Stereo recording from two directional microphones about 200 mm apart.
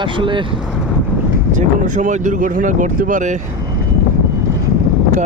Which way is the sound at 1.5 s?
40° right (ahead or behind).